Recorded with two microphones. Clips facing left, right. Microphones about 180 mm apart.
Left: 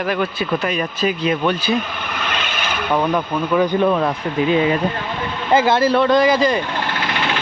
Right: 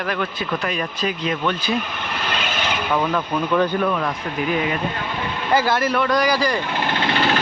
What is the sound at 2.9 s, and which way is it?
Speech, 15° left (ahead or behind).